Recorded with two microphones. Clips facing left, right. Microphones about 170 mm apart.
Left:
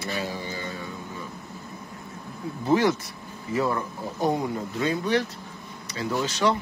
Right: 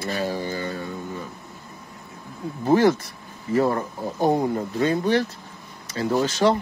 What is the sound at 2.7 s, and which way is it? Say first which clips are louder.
Speech: right 4 dB; 50° right (ahead or behind).